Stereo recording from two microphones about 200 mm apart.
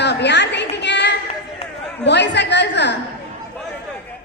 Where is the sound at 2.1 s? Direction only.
60° left (ahead or behind).